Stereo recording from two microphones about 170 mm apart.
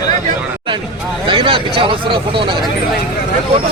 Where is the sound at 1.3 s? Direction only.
30° right (ahead or behind).